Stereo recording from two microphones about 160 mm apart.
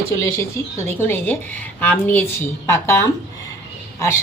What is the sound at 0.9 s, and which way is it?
A woman's voice, 15° left (ahead or behind).